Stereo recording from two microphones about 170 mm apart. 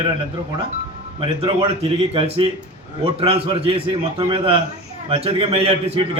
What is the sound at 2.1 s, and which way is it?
A man's voice, 35° right (ahead or behind).